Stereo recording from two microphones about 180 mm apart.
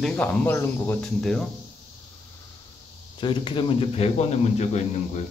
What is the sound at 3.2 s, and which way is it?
A man's voice, 25° left (ahead or behind).